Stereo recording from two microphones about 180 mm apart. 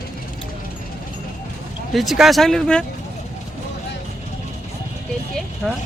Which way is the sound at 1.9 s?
Centre (ahead or behind).